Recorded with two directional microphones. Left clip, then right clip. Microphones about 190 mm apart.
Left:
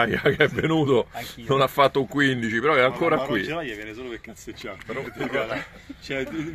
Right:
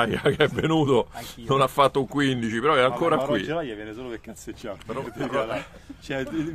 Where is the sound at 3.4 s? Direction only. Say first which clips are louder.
Even; 25° right (ahead or behind).